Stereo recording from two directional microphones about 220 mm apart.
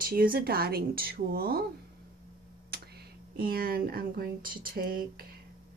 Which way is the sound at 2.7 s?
45° right (ahead or behind).